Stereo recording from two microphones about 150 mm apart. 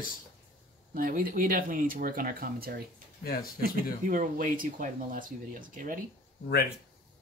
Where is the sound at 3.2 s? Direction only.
90° left.